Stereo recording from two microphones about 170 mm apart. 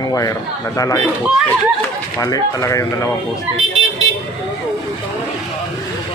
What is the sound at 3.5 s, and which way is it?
Speech, 10° right (ahead or behind).